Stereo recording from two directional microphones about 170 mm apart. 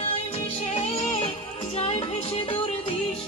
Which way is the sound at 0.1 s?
35° left (ahead or behind).